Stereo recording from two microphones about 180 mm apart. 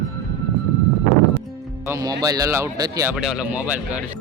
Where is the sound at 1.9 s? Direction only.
20° right (ahead or behind).